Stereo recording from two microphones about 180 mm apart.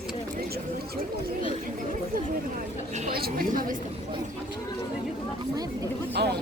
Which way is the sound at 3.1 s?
55° right (ahead or behind).